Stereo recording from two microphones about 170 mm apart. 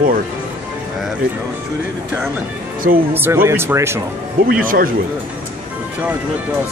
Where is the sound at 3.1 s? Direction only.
10° right (ahead or behind).